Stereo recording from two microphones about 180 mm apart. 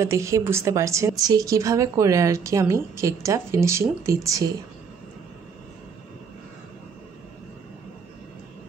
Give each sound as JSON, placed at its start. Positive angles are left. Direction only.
{"t": 0.0, "sound": "speech", "side_deg": -15}